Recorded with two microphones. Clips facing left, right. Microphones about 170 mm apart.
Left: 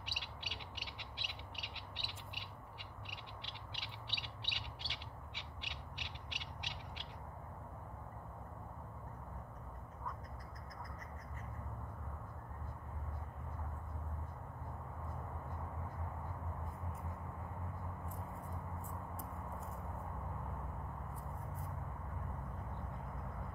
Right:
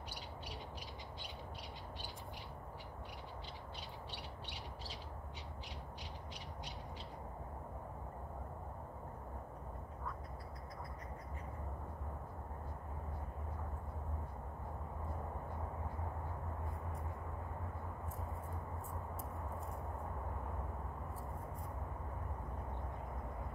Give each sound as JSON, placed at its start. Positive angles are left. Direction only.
{"t": 0.0, "sound": "owl", "side_deg": 75}